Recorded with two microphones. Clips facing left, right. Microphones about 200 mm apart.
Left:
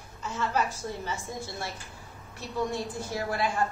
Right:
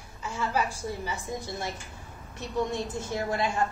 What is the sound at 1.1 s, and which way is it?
Speech, 15° right (ahead or behind).